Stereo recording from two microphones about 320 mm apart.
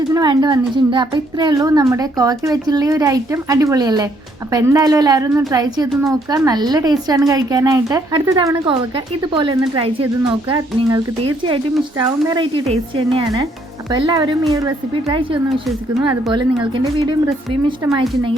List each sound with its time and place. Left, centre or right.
0.1 s speech: centre